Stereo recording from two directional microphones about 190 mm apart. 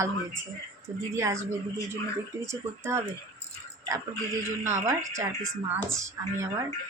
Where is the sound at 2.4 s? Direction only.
15° right (ahead or behind).